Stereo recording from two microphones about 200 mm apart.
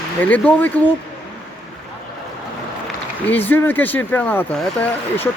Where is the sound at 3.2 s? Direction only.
10° left (ahead or behind).